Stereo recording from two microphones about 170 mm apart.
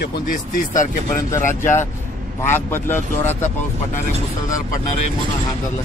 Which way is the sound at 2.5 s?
15° left (ahead or behind).